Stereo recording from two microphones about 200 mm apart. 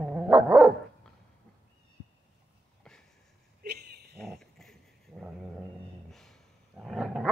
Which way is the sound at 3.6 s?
50° right (ahead or behind).